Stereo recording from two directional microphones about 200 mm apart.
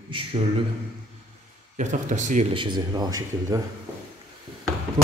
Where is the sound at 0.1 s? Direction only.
25° right (ahead or behind).